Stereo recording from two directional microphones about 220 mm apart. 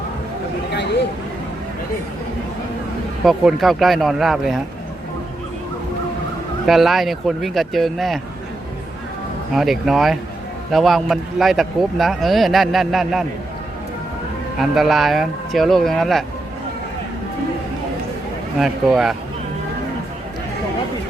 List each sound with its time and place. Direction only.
0.7 s a sound: 50° left (ahead or behind)
3.2 s speech: centre (ahead or behind)
6.7 s speech: centre (ahead or behind)
9.6 s speech: centre (ahead or behind)
14.6 s speech: centre (ahead or behind)
18.6 s speech: centre (ahead or behind)